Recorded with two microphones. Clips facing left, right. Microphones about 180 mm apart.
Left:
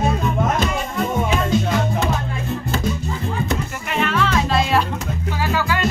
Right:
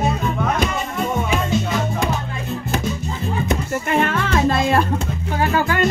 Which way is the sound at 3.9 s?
50° right (ahead or behind).